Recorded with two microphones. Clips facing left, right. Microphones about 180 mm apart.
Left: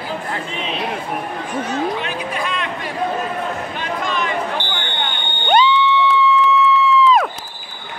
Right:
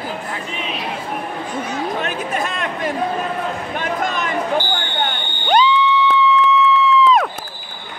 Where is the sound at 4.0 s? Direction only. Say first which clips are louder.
Left 2 dB; 45° right (ahead or behind).